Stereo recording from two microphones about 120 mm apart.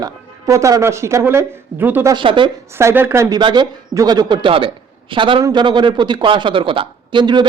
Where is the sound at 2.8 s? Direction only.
20° right (ahead or behind).